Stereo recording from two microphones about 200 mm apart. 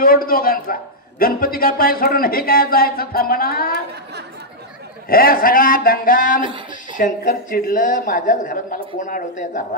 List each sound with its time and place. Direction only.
0.0 s speech: 45° left (ahead or behind)
5.0 s speech: 45° left (ahead or behind)